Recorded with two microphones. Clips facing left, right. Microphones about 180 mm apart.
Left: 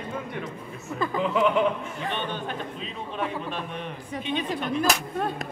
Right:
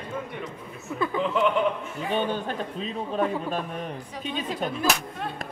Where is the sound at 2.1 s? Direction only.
40° right (ahead or behind).